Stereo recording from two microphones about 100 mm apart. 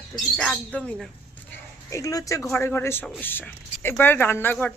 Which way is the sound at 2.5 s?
25° left (ahead or behind).